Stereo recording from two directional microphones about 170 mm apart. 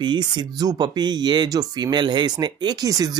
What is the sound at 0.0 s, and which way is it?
Speech, 25° right (ahead or behind).